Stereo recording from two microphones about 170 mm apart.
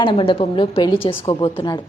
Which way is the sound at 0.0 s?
30° left (ahead or behind).